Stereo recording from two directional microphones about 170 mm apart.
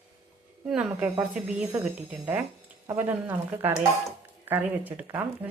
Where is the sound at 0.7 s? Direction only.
5° right (ahead or behind).